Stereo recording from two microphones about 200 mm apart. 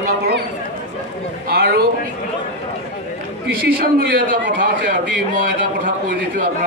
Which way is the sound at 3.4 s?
50° right (ahead or behind).